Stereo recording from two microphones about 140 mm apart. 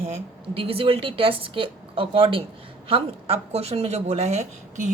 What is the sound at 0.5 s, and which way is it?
A woman's voice, 40° right (ahead or behind).